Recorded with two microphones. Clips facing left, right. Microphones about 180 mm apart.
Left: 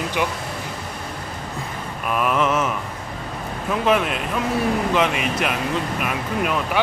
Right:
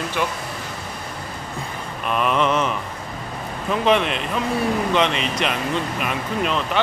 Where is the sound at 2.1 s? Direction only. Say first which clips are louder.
Even; 5° left (ahead or behind).